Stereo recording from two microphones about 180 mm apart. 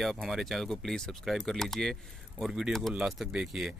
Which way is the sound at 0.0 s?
Centre (ahead or behind).